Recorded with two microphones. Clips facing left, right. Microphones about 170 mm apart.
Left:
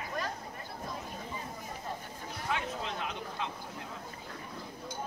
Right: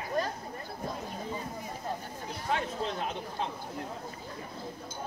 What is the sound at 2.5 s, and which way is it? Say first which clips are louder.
Speech: right 4 dB; 40° right (ahead or behind).